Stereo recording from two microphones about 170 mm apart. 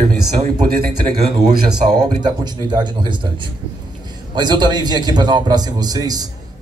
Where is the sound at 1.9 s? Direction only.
25° right (ahead or behind).